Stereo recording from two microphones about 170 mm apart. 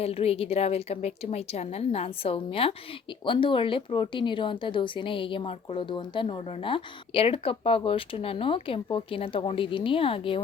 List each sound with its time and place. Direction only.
0.0 s speech: 35° left (ahead or behind)